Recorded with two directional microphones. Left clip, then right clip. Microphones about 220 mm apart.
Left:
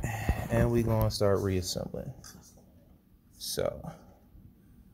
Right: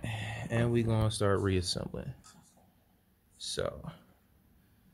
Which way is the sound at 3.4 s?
5° right (ahead or behind).